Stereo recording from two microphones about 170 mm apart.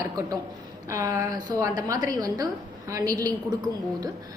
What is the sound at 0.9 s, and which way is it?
A woman's voice, 20° right (ahead or behind).